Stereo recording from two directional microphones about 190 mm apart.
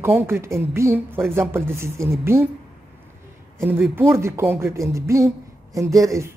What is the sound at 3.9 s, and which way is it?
Speech, 15° right (ahead or behind).